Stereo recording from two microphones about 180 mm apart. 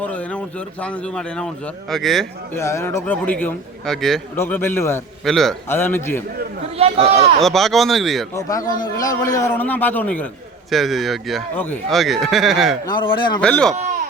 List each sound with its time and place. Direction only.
0.0 s speech: 5° left (ahead or behind)
2.5 s a man's voice: 15° left (ahead or behind)
5.2 s speech: centre (ahead or behind)
5.6 s a man's voice: 10° left (ahead or behind)
7.1 s speech: 35° right (ahead or behind)
7.4 s speech: centre (ahead or behind)
8.3 s a man's voice: 20° left (ahead or behind); by 12.7 s centre (ahead or behind)
12.8 s a man's voice: 25° left (ahead or behind)
13.4 s speech: 5° left (ahead or behind)